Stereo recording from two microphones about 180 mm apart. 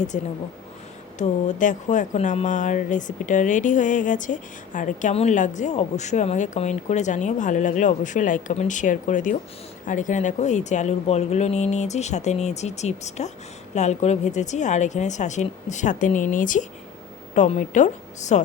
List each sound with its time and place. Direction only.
0.1 s speech: 40° left (ahead or behind)
1.5 s speech: 45° left (ahead or behind)